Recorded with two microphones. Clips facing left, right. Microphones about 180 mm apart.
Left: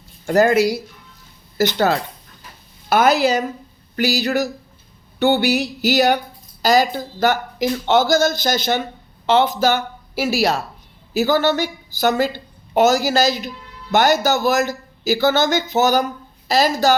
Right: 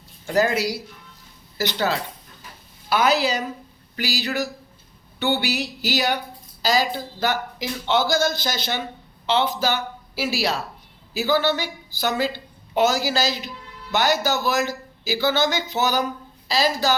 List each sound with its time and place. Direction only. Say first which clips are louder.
0.3 s a woman's voice: left 6 dB; 50° left (ahead or behind)